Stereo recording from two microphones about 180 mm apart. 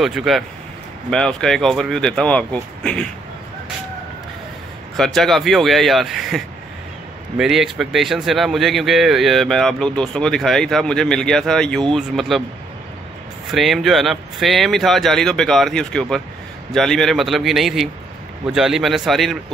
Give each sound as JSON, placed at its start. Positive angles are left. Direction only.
{"t": 0.0, "sound": "speech", "side_deg": 0}
{"t": 4.9, "sound": "speech", "side_deg": 0}
{"t": 13.5, "sound": "speech", "side_deg": 0}